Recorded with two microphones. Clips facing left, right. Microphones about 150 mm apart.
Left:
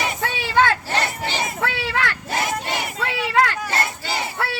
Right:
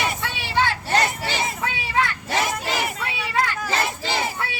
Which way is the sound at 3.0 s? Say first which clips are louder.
Left 5 dB; 90° left.